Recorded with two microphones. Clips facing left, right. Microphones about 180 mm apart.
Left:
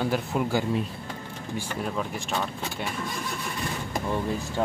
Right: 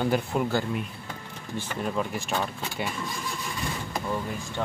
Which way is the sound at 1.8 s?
Centre (ahead or behind).